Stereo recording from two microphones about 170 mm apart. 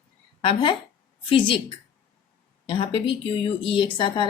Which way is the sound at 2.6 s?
30° left (ahead or behind).